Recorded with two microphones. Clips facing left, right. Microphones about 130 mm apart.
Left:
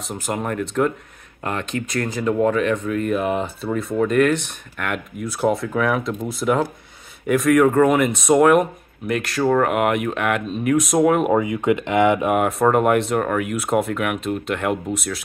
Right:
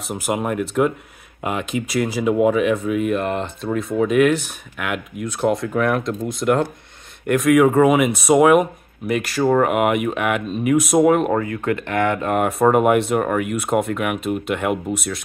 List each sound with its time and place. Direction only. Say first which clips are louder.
0.0 s speech: right 3 dB; 10° right (ahead or behind)
3.2 s speech: left 1 dB; 5° left (ahead or behind)
12.4 s speech: right 1 dB; centre (ahead or behind)